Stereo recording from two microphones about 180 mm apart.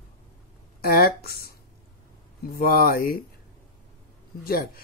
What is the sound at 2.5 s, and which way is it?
Speech, 55° left (ahead or behind).